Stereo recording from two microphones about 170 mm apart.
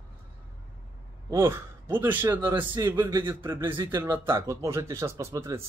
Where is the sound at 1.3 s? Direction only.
15° right (ahead or behind).